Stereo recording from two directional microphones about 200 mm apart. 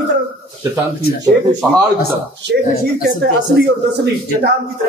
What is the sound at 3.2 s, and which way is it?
Speech, 55° right (ahead or behind).